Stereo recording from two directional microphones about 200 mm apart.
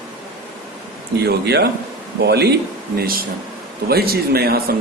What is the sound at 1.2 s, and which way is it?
Speech, 55° right (ahead or behind).